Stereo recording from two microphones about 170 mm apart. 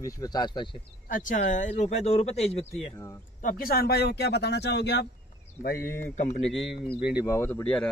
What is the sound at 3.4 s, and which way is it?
Speech, 60° left (ahead or behind).